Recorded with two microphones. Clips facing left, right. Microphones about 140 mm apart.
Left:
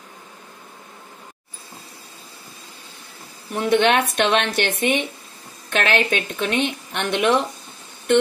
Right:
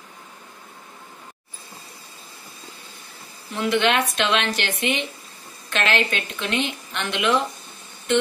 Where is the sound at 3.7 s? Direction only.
55° left (ahead or behind).